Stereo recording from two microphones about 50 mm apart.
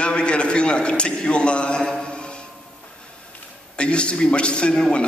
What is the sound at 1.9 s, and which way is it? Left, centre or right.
Mantra, centre.